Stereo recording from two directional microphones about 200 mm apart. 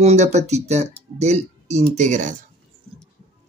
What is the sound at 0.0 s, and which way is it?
Speech, 35° right (ahead or behind).